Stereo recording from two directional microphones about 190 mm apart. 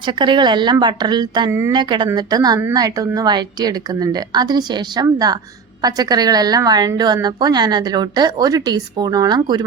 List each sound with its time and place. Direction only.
0.0 s a woman's voice: 25° right (ahead or behind)